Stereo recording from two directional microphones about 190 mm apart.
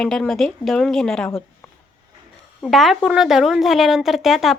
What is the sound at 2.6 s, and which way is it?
A woman's voice, centre (ahead or behind).